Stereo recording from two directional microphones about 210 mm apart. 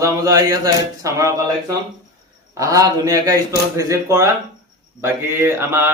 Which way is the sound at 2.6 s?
15° right (ahead or behind).